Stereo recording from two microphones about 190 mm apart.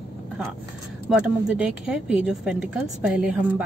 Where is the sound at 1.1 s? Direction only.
5° right (ahead or behind).